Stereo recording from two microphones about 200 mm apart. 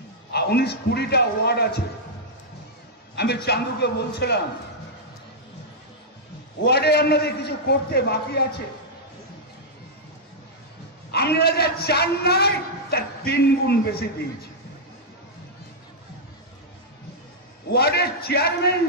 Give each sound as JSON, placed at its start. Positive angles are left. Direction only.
{"t": 0.3, "sound": "a man's voice", "side_deg": 55}
{"t": 3.4, "sound": "a man's voice", "side_deg": 55}
{"t": 6.6, "sound": "a man's voice", "side_deg": 55}
{"t": 11.1, "sound": "a man's voice", "side_deg": 55}
{"t": 17.7, "sound": "a man's voice", "side_deg": 50}